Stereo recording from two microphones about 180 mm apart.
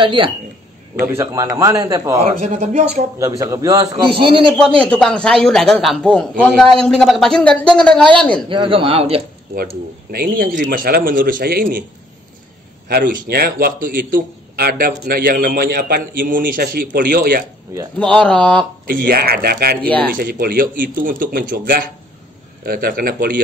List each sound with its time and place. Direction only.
0.0 s speech: 30° right (ahead or behind)
1.0 s a man's voice: 15° right (ahead or behind)
2.4 s speech: 40° right (ahead or behind)
3.2 s speech: 20° right (ahead or behind)
4.1 s speech: 30° right (ahead or behind)
4.6 s a man's voice: 5° left (ahead or behind)
8.5 s speech: 30° right (ahead or behind)
10.1 s a man's voice: 55° right (ahead or behind)
12.8 s a man's voice: 55° right (ahead or behind)
17.9 s speech: 5° left (ahead or behind)
18.9 s a man's voice: 55° right (ahead or behind)
19.8 s speech: 10° left (ahead or behind)
20.1 s a man's voice: 55° right (ahead or behind)